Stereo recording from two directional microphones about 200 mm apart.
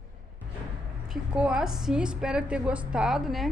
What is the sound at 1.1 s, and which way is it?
A woman's voice, 5° right (ahead or behind).